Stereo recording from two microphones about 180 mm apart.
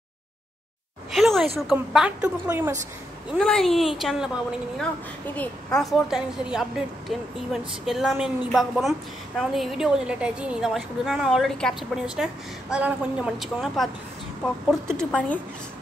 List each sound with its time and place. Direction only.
1.1 s a woman's voice: centre (ahead or behind)
3.3 s a woman's voice: 5° left (ahead or behind)